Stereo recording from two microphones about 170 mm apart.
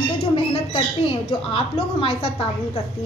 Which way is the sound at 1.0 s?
30° left (ahead or behind).